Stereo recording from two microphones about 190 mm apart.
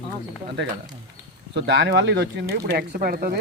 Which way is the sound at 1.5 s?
65° right (ahead or behind).